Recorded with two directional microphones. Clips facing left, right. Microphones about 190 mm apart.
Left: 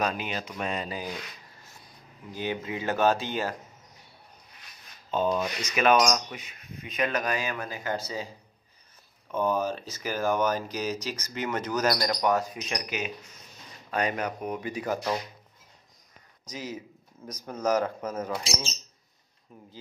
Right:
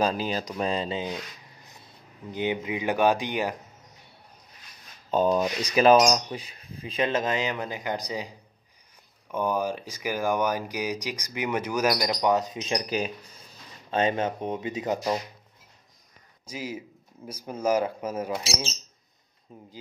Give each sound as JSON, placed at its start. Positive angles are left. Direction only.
{"t": 0.0, "sound": "speech", "side_deg": -30}
{"t": 5.1, "sound": "speech", "side_deg": -40}
{"t": 9.3, "sound": "speech", "side_deg": -10}
{"t": 16.4, "sound": "speech", "side_deg": -10}
{"t": 19.5, "sound": "speech", "side_deg": -20}